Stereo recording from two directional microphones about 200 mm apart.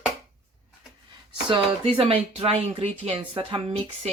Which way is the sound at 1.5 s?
25° right (ahead or behind).